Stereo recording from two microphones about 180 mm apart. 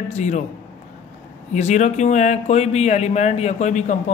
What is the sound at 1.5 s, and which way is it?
Speech, 40° left (ahead or behind).